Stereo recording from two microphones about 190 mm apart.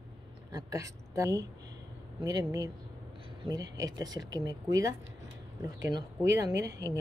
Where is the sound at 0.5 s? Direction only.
15° right (ahead or behind).